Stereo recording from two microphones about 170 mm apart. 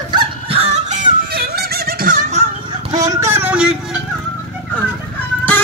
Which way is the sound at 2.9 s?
20° right (ahead or behind).